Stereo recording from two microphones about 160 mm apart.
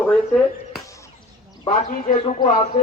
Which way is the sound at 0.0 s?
5° left (ahead or behind).